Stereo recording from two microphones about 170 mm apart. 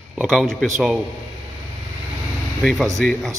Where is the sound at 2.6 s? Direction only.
Centre (ahead or behind).